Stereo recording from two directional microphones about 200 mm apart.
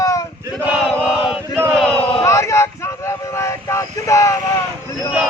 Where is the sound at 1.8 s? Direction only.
5° left (ahead or behind).